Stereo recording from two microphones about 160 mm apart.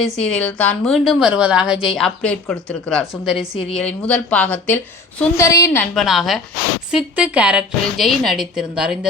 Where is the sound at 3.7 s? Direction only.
10° left (ahead or behind).